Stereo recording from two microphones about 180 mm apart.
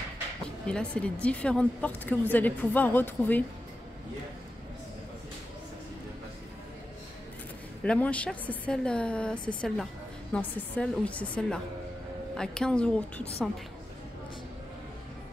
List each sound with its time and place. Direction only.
0.7 s speech: 5° left (ahead or behind)
7.8 s a woman's voice: 5° left (ahead or behind)